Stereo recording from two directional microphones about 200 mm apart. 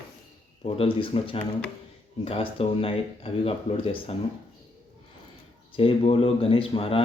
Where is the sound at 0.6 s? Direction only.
25° left (ahead or behind).